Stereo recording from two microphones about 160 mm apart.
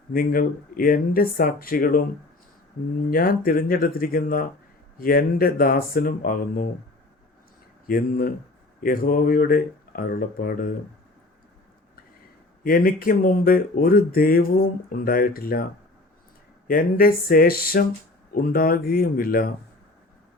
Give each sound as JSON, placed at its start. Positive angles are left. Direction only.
{"t": 0.1, "sound": "speech", "side_deg": 65}
{"t": 3.1, "sound": "speech", "side_deg": 65}
{"t": 7.9, "sound": "speech", "side_deg": 65}
{"t": 12.6, "sound": "speech", "side_deg": 65}
{"t": 16.6, "sound": "speech", "side_deg": 65}